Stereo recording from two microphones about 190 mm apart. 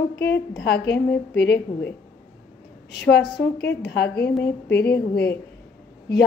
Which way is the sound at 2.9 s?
60° left (ahead or behind).